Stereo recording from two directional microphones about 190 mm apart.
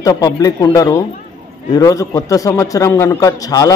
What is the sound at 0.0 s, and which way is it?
A man's voice, 20° left (ahead or behind).